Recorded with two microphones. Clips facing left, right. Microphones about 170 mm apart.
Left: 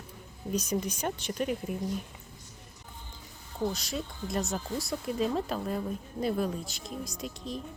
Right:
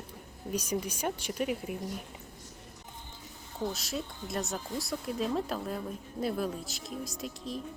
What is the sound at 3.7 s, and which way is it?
Speech, centre (ahead or behind).